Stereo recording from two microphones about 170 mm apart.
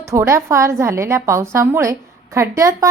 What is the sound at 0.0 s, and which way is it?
A woman's voice, 15° right (ahead or behind).